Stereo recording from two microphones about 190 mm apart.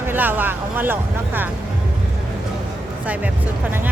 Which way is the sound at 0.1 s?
10° right (ahead or behind).